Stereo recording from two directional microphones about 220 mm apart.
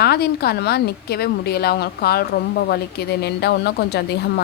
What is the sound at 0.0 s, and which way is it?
A woman's voice, 45° left (ahead or behind).